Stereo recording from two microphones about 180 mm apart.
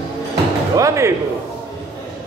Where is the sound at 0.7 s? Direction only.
15° right (ahead or behind).